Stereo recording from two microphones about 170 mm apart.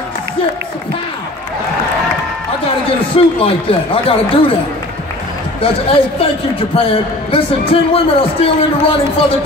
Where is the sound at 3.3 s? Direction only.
35° left (ahead or behind).